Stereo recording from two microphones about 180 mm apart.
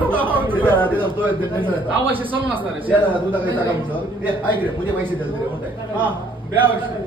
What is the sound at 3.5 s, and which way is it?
Speech, 10° right (ahead or behind).